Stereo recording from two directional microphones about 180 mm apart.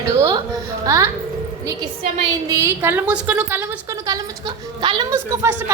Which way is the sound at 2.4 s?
20° right (ahead or behind).